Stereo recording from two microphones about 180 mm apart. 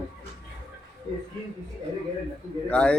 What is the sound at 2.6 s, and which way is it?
Speech, 5° left (ahead or behind).